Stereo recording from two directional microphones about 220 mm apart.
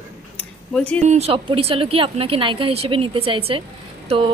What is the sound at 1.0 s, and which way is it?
A woman's voice, 30° right (ahead or behind).